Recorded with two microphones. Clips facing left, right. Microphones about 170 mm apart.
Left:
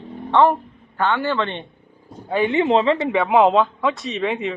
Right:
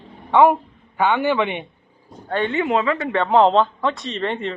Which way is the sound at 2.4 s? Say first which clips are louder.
Left 4 dB; 20° left (ahead or behind).